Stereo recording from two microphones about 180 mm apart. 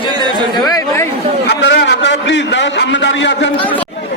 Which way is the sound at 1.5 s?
70° left (ahead or behind).